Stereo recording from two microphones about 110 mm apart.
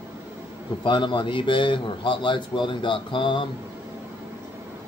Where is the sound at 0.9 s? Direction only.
45° left (ahead or behind).